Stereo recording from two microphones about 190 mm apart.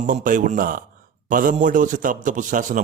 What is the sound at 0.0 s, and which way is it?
Speech, 45° right (ahead or behind).